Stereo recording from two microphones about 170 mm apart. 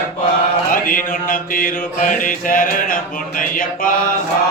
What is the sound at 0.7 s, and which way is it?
Mantra, 55° left (ahead or behind).